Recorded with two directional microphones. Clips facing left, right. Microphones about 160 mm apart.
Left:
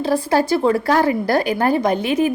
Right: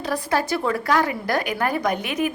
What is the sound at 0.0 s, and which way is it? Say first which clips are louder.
A woman's voice: left 6 dB; 30° left (ahead or behind).